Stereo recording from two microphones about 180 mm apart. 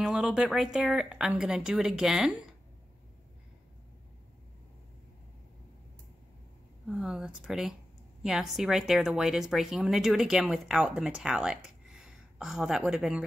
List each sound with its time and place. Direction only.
0.0 s speech: 5° right (ahead or behind)
6.9 s speech: 5° right (ahead or behind)